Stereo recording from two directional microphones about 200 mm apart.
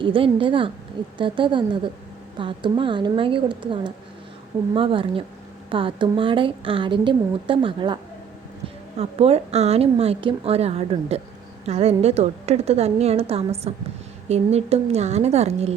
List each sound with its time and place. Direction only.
0.0 s a woman's voice: 25° right (ahead or behind)
9.0 s a woman's voice: 30° right (ahead or behind)